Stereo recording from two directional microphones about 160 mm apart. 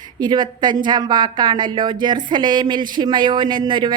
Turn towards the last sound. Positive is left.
turn(degrees=-30)  # may be behind; listen again after turning